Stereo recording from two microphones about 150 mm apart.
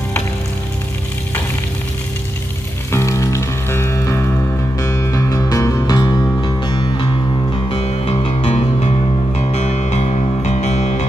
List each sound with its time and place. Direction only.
2.9 s music: 20° left (ahead or behind)
7.7 s music: 40° left (ahead or behind)